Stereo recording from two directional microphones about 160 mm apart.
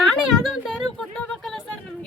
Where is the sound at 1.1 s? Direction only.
5° left (ahead or behind).